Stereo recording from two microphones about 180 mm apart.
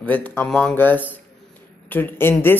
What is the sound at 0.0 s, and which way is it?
Speech, 10° left (ahead or behind).